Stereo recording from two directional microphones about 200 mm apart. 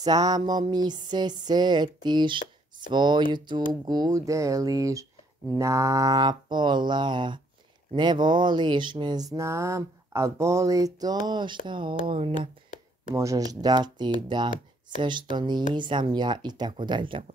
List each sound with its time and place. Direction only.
0.0 s speech: 20° right (ahead or behind)
13.1 s speech: 15° right (ahead or behind)